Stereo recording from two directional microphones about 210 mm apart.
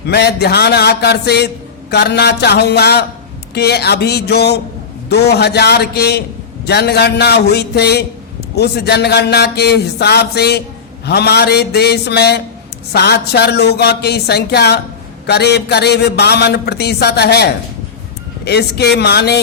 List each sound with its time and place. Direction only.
0.1 s speech: 50° left (ahead or behind)